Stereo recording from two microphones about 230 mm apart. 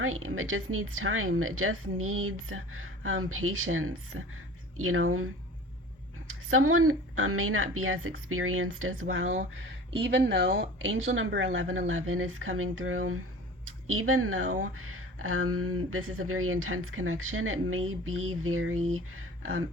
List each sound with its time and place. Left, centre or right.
0.0 s a woman's voice: right
6.2 s a woman's voice: right
9.6 s a woman's voice: right